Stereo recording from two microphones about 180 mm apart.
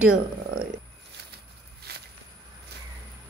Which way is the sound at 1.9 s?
60° right (ahead or behind).